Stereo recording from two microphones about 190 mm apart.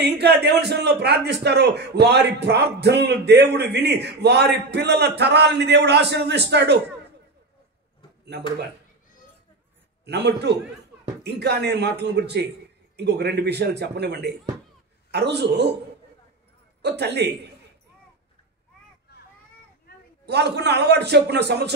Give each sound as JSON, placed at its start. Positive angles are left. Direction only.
{"t": 0.0, "sound": "a man's voice", "side_deg": -60}
{"t": 8.3, "sound": "a man's voice", "side_deg": -60}
{"t": 10.0, "sound": "a man's voice", "side_deg": -60}
{"t": 17.0, "sound": "a man's voice", "side_deg": -60}
{"t": 20.2, "sound": "a man's voice", "side_deg": -60}